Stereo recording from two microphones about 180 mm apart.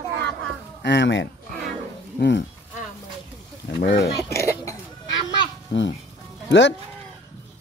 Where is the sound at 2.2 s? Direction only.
70° left (ahead or behind).